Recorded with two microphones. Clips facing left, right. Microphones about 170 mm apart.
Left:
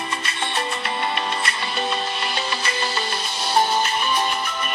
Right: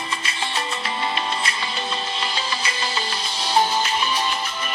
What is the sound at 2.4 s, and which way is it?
Music, 60° left (ahead or behind).